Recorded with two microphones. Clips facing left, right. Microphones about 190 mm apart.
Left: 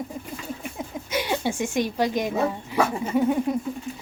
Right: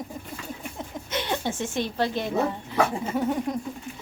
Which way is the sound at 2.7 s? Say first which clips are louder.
Left 2 dB; 10° left (ahead or behind).